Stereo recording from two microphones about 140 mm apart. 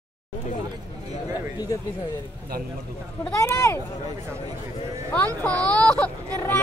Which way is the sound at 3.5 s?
20° left (ahead or behind).